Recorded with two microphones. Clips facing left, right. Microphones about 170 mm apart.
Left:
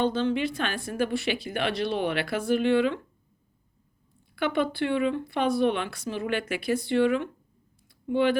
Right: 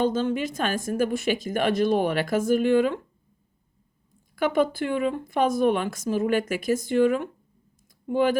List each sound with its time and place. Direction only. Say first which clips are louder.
0.0 s a woman's voice: right 1 dB; 45° right (ahead or behind)
4.4 s a woman's voice: right 3 dB; 45° right (ahead or behind)